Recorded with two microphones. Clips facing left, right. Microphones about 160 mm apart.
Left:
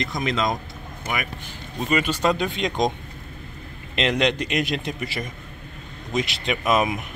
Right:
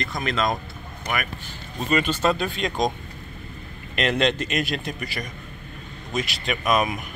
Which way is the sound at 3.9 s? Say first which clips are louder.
Even; 20° left (ahead or behind).